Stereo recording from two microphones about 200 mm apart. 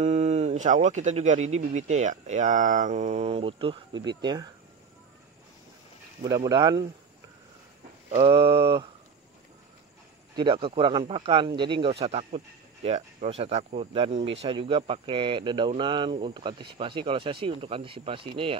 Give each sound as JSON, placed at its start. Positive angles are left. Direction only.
{"t": 0.0, "sound": "speech", "side_deg": -35}
{"t": 6.2, "sound": "speech", "side_deg": -15}
{"t": 8.1, "sound": "speech", "side_deg": -25}
{"t": 10.3, "sound": "speech", "side_deg": -25}